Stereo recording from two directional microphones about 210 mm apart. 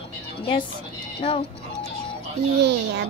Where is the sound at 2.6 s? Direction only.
55° right (ahead or behind).